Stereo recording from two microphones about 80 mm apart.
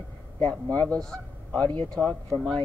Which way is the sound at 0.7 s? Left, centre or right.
Centre.